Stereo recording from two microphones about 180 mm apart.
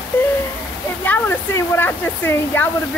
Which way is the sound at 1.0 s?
10° left (ahead or behind).